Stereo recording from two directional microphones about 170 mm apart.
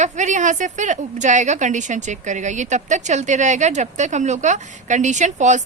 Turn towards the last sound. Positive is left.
turn(degrees=-45)  # may be behind; listen again after turning